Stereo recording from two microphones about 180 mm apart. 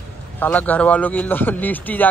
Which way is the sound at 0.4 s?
10° left (ahead or behind).